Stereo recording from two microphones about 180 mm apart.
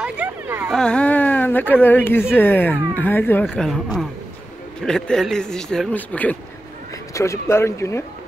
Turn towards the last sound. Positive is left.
turn(degrees=15)  # may be behind; listen again after turning